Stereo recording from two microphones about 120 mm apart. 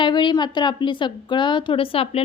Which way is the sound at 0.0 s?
40° left (ahead or behind).